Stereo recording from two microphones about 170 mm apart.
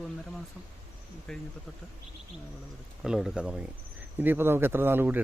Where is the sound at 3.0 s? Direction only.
5° right (ahead or behind).